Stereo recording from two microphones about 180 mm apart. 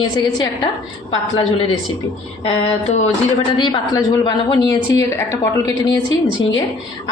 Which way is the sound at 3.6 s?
25° left (ahead or behind).